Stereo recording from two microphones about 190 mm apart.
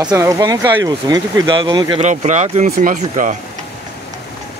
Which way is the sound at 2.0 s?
40° right (ahead or behind).